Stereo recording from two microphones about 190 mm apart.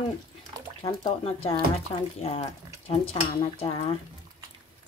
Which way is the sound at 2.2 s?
35° left (ahead or behind).